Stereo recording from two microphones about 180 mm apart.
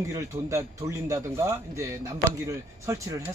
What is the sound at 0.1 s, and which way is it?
Speech, 15° right (ahead or behind).